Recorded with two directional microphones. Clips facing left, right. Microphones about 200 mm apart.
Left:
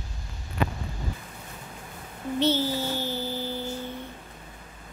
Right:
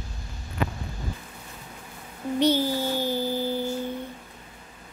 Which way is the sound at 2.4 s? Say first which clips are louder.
Right 2 dB; 15° right (ahead or behind).